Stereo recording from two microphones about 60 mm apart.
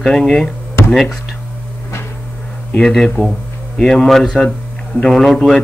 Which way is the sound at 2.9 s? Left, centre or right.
Centre.